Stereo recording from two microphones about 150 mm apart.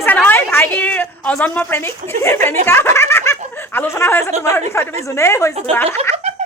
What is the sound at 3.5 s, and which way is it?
A woman's voice, 15° left (ahead or behind).